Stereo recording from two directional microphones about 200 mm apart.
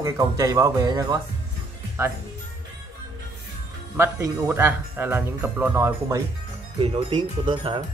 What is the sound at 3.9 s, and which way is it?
Speech, 10° right (ahead or behind).